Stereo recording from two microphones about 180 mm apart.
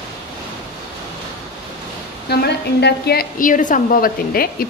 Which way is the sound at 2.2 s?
65° left (ahead or behind).